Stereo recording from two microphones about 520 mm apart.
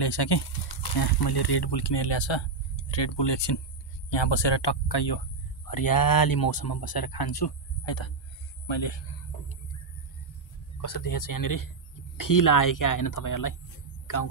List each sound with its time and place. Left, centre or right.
0.0 s speech: left
10.8 s speech: left